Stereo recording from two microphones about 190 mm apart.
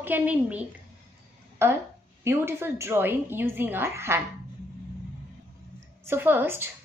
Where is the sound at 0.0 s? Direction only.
10° right (ahead or behind).